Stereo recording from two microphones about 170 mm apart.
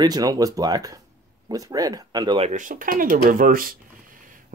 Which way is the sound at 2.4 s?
50° right (ahead or behind).